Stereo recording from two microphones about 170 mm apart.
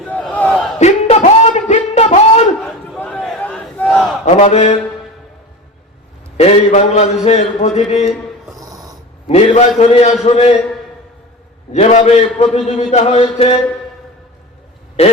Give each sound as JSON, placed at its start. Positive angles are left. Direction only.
{"t": 0.0, "sound": "battle cry", "side_deg": 5}
{"t": 0.8, "sound": "a sound", "side_deg": 40}
{"t": 2.6, "sound": "battle cry", "side_deg": 5}
{"t": 4.3, "sound": "a man's voice", "side_deg": 40}
{"t": 6.3, "sound": "a man's voice", "side_deg": 40}
{"t": 8.5, "sound": "dog", "side_deg": -20}
{"t": 9.2, "sound": "a man's voice", "side_deg": 40}
{"t": 11.7, "sound": "a man's voice", "side_deg": 40}
{"t": 15.0, "sound": "a man's voice", "side_deg": 35}